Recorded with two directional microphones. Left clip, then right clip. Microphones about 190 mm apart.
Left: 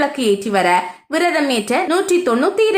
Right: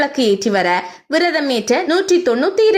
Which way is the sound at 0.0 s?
25° right (ahead or behind).